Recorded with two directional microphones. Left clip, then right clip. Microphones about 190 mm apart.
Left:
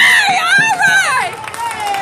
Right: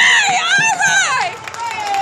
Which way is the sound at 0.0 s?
5° right (ahead or behind).